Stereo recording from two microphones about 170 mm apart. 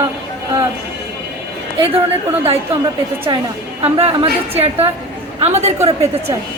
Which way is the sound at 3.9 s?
35° right (ahead or behind).